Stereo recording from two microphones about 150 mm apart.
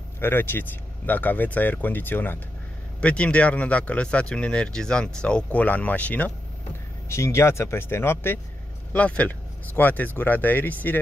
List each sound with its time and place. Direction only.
0.2 s speech: 15° left (ahead or behind)